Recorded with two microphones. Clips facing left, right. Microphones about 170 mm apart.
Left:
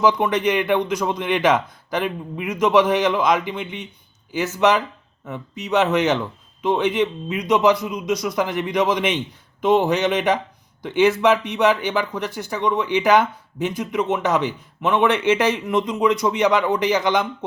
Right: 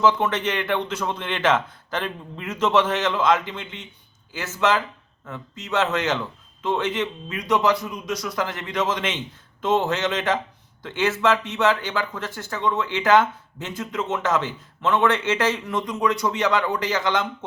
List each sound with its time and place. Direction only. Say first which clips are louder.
0.0 s speech: left 3 dB; 15° left (ahead or behind)